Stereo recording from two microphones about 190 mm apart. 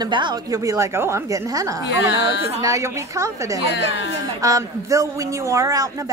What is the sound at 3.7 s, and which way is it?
Speech, 70° left (ahead or behind).